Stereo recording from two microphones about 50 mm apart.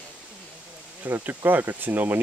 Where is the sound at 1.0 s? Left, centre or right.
Right.